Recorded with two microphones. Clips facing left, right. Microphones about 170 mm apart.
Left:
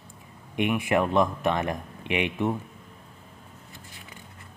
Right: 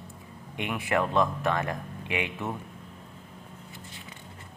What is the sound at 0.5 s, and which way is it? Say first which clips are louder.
Speech: left 4 dB; 15° left (ahead or behind).